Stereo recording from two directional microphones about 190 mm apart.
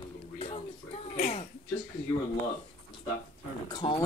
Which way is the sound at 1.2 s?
45° left (ahead or behind).